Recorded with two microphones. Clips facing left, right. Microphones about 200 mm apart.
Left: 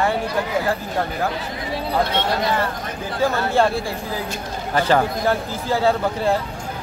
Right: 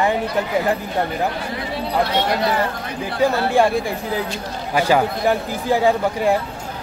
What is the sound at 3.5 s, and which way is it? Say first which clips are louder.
Speech: right 2 dB; 15° right (ahead or behind).